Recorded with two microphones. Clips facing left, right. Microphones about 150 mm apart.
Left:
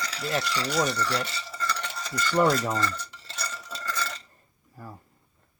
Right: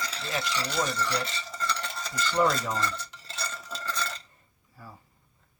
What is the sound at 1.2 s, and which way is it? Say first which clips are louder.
Stir: left 1 dB; 5° left (ahead or behind).